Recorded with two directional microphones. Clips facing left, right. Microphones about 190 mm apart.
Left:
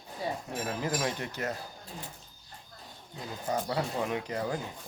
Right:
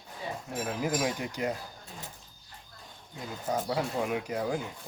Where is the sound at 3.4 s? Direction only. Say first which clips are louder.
Right 1 dB; 5° right (ahead or behind).